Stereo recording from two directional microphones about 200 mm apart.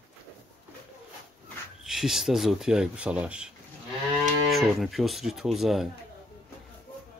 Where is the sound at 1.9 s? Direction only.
Centre (ahead or behind).